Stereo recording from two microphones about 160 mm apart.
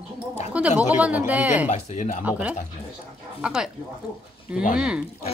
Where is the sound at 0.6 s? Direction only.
5° right (ahead or behind).